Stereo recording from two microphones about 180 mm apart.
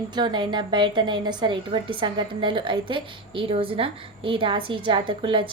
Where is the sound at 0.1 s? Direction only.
25° right (ahead or behind).